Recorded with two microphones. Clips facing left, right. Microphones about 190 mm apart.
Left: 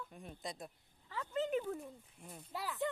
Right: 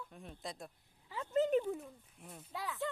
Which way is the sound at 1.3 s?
40° right (ahead or behind).